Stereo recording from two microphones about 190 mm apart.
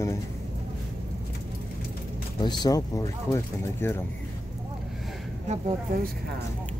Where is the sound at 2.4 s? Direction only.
20° left (ahead or behind).